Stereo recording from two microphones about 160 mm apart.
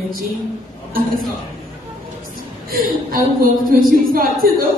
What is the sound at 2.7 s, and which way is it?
A woman's voice, 60° right (ahead or behind).